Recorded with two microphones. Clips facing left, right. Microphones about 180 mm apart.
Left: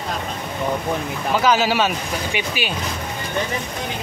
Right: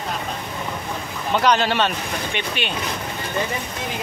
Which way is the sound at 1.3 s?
5° left (ahead or behind).